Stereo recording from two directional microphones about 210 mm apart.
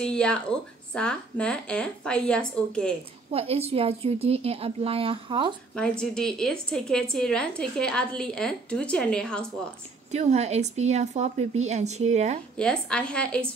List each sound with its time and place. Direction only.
0.0 s a woman's voice: 5° left (ahead or behind)
3.3 s a woman's voice: 30° right (ahead or behind)
5.8 s a woman's voice: 5° left (ahead or behind)
10.1 s speech: 30° right (ahead or behind)
12.5 s a woman's voice: 5° left (ahead or behind)